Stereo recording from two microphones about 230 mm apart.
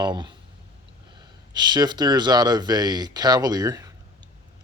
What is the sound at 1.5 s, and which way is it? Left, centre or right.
Speech, centre.